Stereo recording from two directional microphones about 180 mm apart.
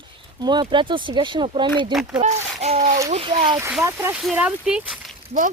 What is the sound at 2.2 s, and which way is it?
A child's voice, 40° right (ahead or behind).